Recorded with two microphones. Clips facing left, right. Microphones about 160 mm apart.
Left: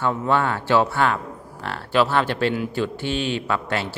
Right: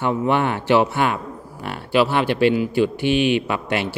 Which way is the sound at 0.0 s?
20° right (ahead or behind).